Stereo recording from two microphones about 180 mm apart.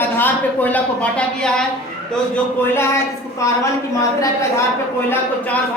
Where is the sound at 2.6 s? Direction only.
15° left (ahead or behind).